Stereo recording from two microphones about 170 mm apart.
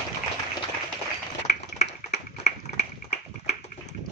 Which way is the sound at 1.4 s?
40° left (ahead or behind).